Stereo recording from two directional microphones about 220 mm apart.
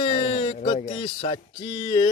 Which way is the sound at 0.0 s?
25° left (ahead or behind).